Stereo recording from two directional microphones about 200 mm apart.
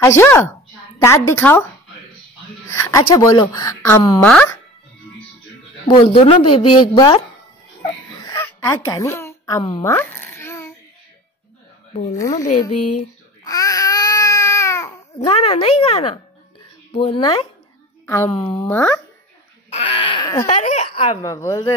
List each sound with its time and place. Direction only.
0.2 s a woman's voice: 10° left (ahead or behind)
2.7 s speech: 15° left (ahead or behind)
4.2 s speech: 10° left (ahead or behind)
5.9 s speech: 25° left (ahead or behind)
8.3 s a sound: 15° left (ahead or behind)
12.2 s speech: 15° left (ahead or behind)
13.4 s baby cry: 20° left (ahead or behind)
15.1 s speech: 30° left (ahead or behind)
18.0 s speech: 10° left (ahead or behind)
19.7 s a sound: 30° left (ahead or behind)
20.4 s speech: 30° left (ahead or behind); by 21.7 s 15° left (ahead or behind)